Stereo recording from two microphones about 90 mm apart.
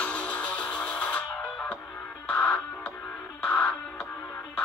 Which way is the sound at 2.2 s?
15° left (ahead or behind).